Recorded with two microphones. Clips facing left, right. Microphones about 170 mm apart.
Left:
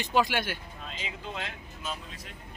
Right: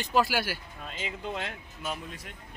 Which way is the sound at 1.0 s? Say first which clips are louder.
Right 4 dB; 55° right (ahead or behind).